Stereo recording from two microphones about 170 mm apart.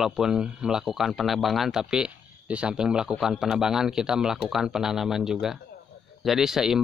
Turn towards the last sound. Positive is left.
turn(degrees=-5)  # may be behind; listen again after turning